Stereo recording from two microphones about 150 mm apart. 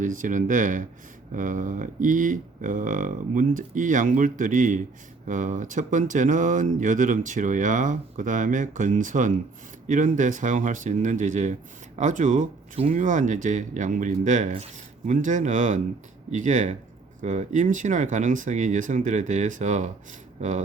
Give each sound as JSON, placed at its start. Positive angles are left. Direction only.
{"t": 0.0, "sound": "speech", "side_deg": -60}